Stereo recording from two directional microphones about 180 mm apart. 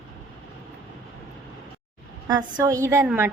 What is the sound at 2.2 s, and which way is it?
Speech, 20° right (ahead or behind).